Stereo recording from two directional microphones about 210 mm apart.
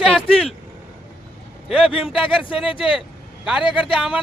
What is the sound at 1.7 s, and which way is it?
Speech, 25° left (ahead or behind).